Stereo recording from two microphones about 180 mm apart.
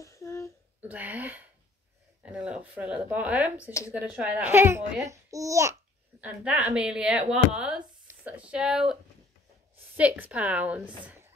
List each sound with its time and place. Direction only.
0.0 s a sound: 15° left (ahead or behind)
0.7 s speech: 10° right (ahead or behind)
9.9 s speech: 10° right (ahead or behind)